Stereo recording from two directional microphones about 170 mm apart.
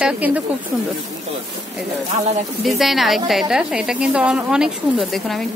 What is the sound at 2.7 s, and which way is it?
A woman's voice, centre (ahead or behind).